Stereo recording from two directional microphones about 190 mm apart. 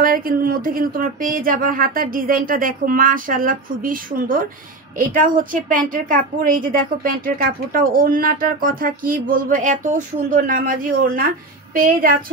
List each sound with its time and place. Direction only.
0.0 s a woman's voice: 50° right (ahead or behind)